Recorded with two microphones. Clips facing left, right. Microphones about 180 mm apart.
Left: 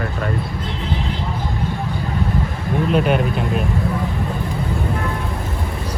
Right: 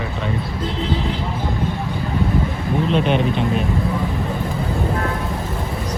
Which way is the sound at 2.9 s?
5° left (ahead or behind).